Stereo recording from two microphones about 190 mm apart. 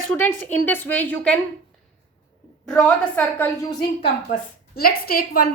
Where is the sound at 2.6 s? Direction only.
5° left (ahead or behind).